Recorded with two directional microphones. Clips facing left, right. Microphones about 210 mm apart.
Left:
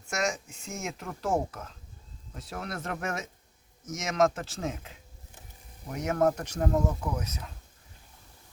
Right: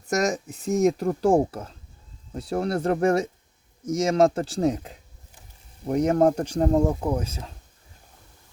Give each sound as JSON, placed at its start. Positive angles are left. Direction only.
{"t": 0.1, "sound": "speech", "side_deg": -40}